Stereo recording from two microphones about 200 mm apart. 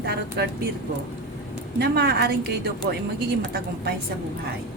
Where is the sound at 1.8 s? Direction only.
55° right (ahead or behind).